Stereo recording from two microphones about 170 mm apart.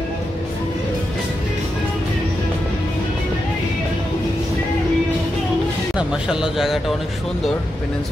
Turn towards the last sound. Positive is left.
turn(degrees=-5)  # may be behind; listen again after turning